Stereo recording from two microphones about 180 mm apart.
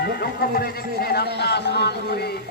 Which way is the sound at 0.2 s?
60° left (ahead or behind).